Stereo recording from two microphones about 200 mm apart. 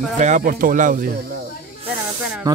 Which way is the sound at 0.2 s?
40° right (ahead or behind).